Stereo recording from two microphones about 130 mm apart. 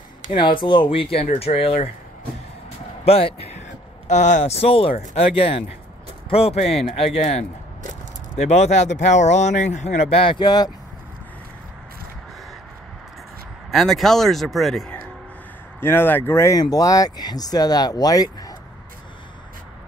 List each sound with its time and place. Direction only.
0.4 s speech: 35° left (ahead or behind)
3.1 s speech: 50° left (ahead or behind)
4.1 s speech: 65° left (ahead or behind)
8.4 s speech: 60° left (ahead or behind); by 10.7 s 30° left (ahead or behind)
13.7 s speech: centre (ahead or behind)
15.8 s speech: 15° left (ahead or behind)